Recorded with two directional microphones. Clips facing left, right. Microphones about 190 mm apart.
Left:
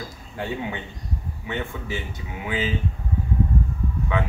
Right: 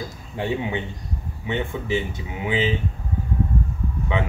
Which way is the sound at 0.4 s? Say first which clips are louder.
Right 4 dB; 20° right (ahead or behind).